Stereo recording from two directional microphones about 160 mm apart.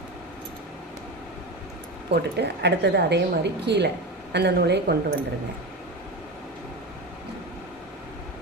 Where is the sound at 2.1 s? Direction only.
90° right.